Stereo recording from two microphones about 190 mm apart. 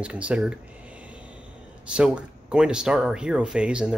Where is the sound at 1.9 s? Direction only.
5° right (ahead or behind).